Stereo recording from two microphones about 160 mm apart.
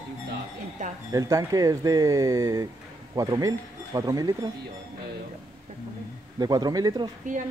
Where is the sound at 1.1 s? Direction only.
20° right (ahead or behind).